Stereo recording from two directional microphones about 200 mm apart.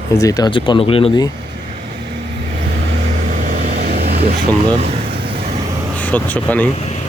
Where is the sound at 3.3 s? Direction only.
40° right (ahead or behind).